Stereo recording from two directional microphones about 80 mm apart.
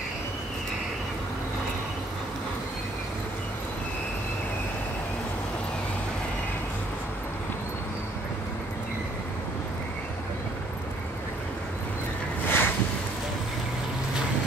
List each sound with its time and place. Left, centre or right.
12.4 s boat: left